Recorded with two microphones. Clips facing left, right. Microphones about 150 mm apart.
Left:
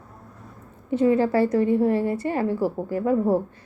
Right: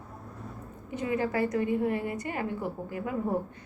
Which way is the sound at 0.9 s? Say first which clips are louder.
Left 10 dB; 30° left (ahead or behind).